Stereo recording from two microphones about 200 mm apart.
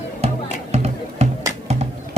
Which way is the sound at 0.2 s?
30° right (ahead or behind).